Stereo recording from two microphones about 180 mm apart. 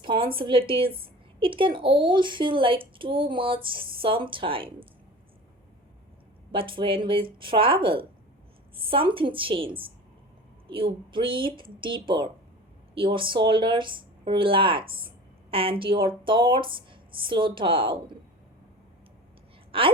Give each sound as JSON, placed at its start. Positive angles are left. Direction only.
{"t": 0.0, "sound": "a sound", "side_deg": -25}
{"t": 0.3, "sound": "speech", "side_deg": -30}
{"t": 6.5, "sound": "speech", "side_deg": -30}
{"t": 19.7, "sound": "speech", "side_deg": -30}